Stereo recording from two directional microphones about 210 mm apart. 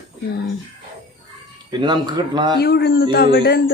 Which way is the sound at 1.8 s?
20° right (ahead or behind).